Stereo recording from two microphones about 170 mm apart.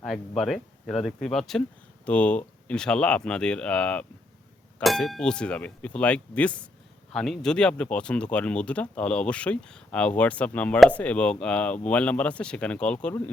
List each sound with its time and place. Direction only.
0.0 s speech: centre (ahead or behind)